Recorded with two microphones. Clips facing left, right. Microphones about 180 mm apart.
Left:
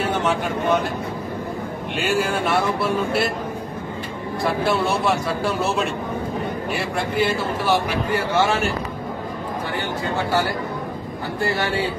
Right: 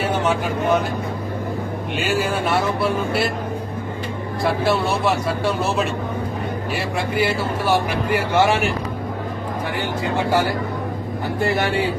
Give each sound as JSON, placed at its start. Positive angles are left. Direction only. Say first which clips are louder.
{"t": 0.0, "sound": "vehicle", "louder": "right 1 dB", "side_deg": 0}
{"t": 2.0, "sound": "speech", "louder": "even", "side_deg": 0}
{"t": 4.4, "sound": "speech", "louder": "right 1 dB", "side_deg": 0}
{"t": 11.4, "sound": "speech", "louder": "right 2 dB", "side_deg": -20}